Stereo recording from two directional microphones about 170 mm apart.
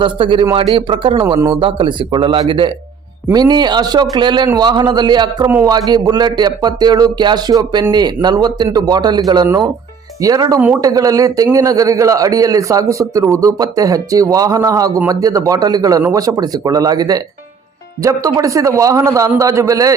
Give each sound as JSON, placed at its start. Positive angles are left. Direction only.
{"t": 0.0, "sound": "a man's voice", "side_deg": -30}